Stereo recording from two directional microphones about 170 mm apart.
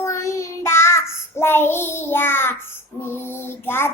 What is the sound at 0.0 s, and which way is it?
Child singing, 15° left (ahead or behind).